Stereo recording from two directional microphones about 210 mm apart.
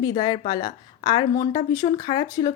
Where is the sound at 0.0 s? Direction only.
20° left (ahead or behind).